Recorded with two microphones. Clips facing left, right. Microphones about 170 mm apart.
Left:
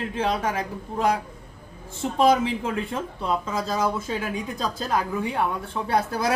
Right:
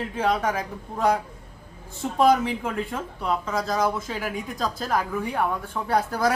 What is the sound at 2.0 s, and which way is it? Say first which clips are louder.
Speech: even; 25° left (ahead or behind).